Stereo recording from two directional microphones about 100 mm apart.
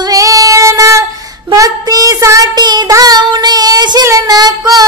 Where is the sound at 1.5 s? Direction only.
35° right (ahead or behind).